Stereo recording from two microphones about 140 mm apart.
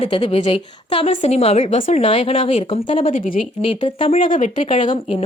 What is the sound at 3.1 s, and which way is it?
Speech, 70° left (ahead or behind).